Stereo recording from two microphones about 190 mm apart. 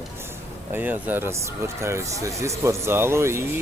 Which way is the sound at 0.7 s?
10° right (ahead or behind).